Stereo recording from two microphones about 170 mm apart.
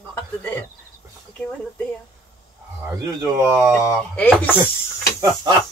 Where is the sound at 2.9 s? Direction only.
15° right (ahead or behind).